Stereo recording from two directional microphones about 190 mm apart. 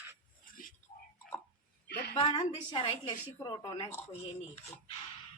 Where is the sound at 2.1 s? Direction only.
25° left (ahead or behind).